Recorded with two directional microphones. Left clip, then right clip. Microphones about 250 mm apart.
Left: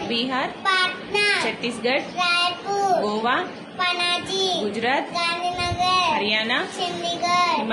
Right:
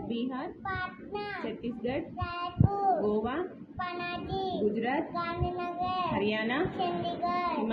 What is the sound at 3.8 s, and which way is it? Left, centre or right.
Child singing, left.